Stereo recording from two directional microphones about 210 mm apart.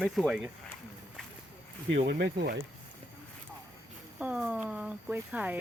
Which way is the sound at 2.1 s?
50° right (ahead or behind).